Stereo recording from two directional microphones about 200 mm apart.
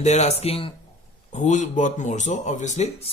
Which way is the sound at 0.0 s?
35° left (ahead or behind).